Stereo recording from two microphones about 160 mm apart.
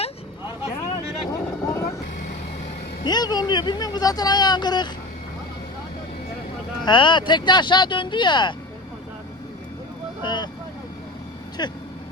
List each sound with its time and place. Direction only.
1.3 s boat: 20° left (ahead or behind)
3.0 s speech: 25° left (ahead or behind)
6.8 s speech: 30° left (ahead or behind)
10.2 s vehicle: 30° left (ahead or behind)
11.6 s speech: 25° left (ahead or behind)